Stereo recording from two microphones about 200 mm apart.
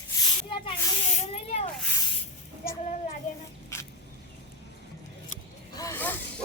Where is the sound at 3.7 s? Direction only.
15° left (ahead or behind).